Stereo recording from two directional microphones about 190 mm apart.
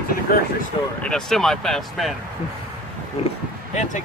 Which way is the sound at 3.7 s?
35° left (ahead or behind).